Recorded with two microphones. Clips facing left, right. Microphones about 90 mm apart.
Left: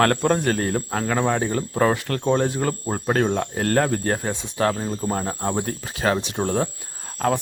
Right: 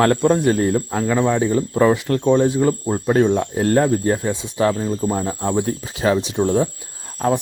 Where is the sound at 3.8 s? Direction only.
55° left (ahead or behind).